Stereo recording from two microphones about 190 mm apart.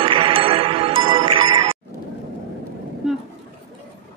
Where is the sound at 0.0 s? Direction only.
25° right (ahead or behind).